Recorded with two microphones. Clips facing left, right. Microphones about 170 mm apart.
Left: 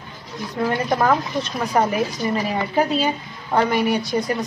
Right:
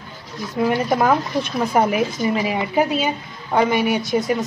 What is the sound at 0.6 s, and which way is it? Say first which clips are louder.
Speech: right 2 dB; 10° right (ahead or behind).